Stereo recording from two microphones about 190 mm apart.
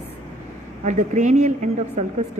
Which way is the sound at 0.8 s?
40° right (ahead or behind).